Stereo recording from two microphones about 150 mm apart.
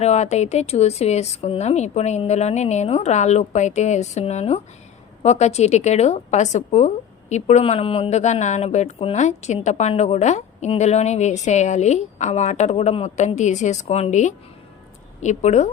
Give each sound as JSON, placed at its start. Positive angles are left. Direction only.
{"t": 0.0, "sound": "a woman's voice", "side_deg": 45}